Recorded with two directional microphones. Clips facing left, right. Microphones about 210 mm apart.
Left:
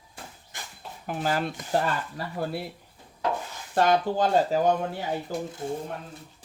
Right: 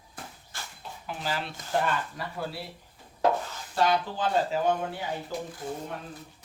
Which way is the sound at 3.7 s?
50° left (ahead or behind).